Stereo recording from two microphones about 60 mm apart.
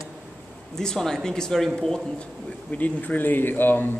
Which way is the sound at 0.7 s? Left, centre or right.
Centre.